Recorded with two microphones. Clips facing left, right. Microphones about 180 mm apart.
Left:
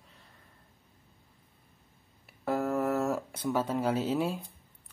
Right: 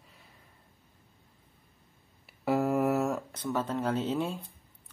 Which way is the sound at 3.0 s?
5° left (ahead or behind).